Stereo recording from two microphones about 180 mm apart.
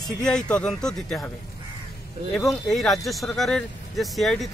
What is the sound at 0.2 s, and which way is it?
Speech, 5° left (ahead or behind).